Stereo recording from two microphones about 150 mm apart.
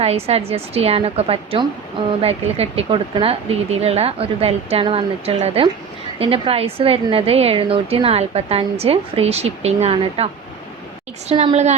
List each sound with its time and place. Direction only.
0.0 s a woman's voice: 40° right (ahead or behind)